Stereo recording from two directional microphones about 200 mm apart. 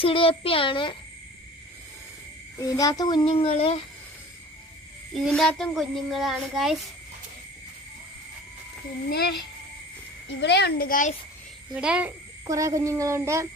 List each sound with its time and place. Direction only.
0.0 s a child's voice: 25° left (ahead or behind)
2.6 s a child's voice: 15° left (ahead or behind)
5.1 s a child's voice: centre (ahead or behind)
9.0 s a child's voice: 55° left (ahead or behind)
11.7 s a sound: 5° right (ahead or behind)